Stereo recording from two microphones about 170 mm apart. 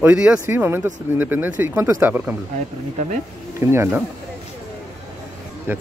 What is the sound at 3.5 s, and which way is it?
Speech, 15° right (ahead or behind).